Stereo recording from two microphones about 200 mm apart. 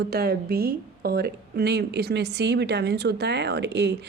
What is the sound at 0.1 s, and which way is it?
A woman's voice, 50° right (ahead or behind).